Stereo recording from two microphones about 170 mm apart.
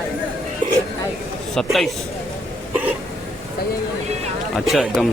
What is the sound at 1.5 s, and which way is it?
Speech, centre (ahead or behind).